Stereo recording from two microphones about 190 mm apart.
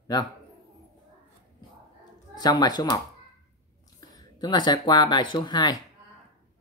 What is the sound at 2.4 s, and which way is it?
Speech, 20° left (ahead or behind).